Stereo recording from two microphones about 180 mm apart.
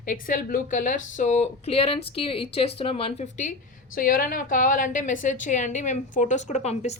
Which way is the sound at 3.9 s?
50° left (ahead or behind).